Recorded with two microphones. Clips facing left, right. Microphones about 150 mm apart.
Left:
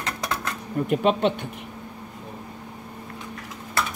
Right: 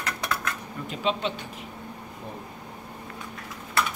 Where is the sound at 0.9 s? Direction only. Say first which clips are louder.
Left 7 dB; 60° left (ahead or behind).